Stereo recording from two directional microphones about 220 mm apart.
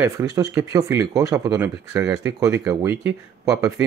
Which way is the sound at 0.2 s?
15° right (ahead or behind).